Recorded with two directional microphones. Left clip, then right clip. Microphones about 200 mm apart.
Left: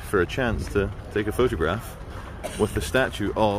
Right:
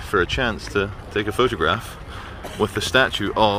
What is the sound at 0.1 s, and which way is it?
Speech, 20° left (ahead or behind).